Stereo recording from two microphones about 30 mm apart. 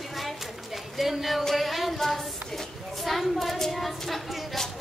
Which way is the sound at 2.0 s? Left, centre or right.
Centre.